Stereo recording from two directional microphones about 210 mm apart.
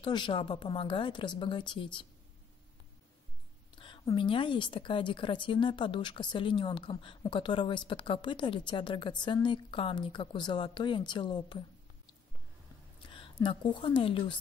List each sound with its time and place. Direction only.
0.0 s a woman's voice: 20° left (ahead or behind)
3.7 s a woman's voice: 20° left (ahead or behind)
13.0 s speech: 25° left (ahead or behind)